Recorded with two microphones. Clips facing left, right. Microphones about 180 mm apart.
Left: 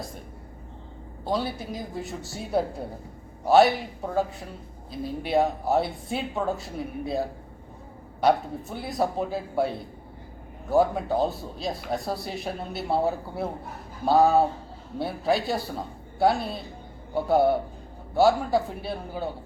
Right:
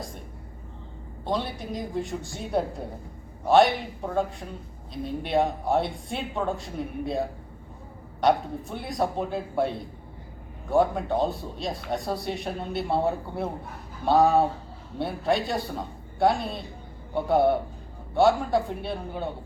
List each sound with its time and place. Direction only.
1.2 s speech: 5° left (ahead or behind)